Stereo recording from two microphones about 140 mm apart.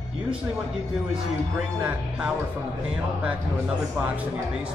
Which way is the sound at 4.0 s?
10° right (ahead or behind).